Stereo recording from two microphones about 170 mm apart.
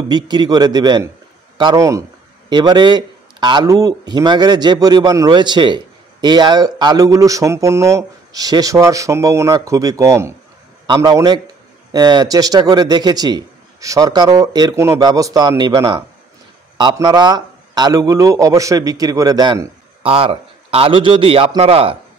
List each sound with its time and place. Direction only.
0.1 s a man's voice: 25° right (ahead or behind)